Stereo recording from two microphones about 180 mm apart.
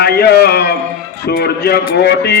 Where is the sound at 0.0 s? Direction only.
65° left (ahead or behind).